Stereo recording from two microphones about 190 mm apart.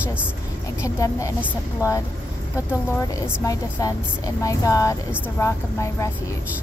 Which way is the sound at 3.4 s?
20° left (ahead or behind).